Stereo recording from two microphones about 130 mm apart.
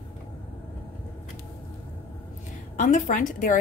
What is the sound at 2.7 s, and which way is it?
Speech, 75° left (ahead or behind).